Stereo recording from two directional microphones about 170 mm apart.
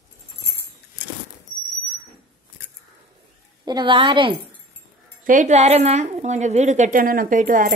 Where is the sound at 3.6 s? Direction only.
25° right (ahead or behind).